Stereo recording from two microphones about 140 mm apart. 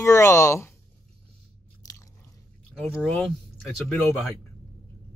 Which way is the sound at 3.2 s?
5° left (ahead or behind).